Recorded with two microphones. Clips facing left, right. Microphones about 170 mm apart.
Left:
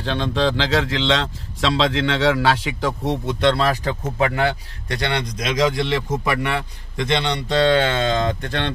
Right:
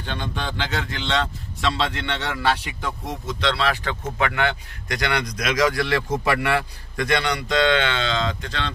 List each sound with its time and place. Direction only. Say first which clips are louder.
0.0 s a man's voice: left 9 dB; 90° left; by 8.7 s 55° left (ahead or behind)